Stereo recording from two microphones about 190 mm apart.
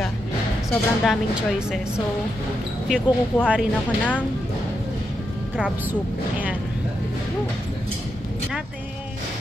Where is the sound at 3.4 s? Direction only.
5° right (ahead or behind).